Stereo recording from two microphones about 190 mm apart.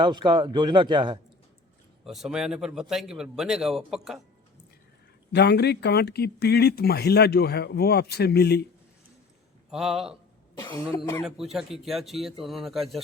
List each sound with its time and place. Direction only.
0.0 s speech: 25° right (ahead or behind)
2.0 s a man's voice: centre (ahead or behind)
5.3 s speech: 60° left (ahead or behind)
9.7 s a man's voice: centre (ahead or behind)
10.6 s cough: 20° left (ahead or behind)
11.2 s a man's voice: centre (ahead or behind)